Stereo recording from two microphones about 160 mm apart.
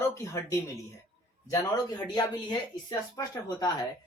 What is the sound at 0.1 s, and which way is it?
Speech, 15° left (ahead or behind).